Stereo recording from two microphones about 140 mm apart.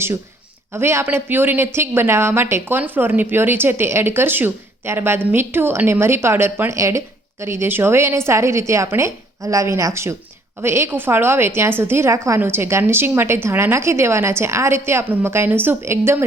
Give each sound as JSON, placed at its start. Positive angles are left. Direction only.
{"t": 0.7, "sound": "a woman's voice", "side_deg": -20}